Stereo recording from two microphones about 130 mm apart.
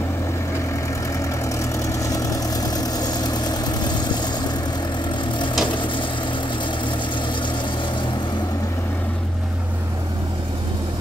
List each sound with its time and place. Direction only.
1.6 s vehicle: 25° left (ahead or behind)
5.7 s vehicle: 40° left (ahead or behind)